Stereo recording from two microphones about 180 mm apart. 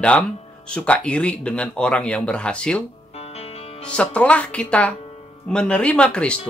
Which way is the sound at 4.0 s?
5° left (ahead or behind).